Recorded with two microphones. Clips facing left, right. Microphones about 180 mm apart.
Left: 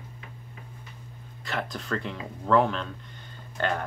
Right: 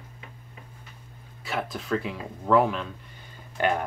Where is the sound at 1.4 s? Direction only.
5° right (ahead or behind).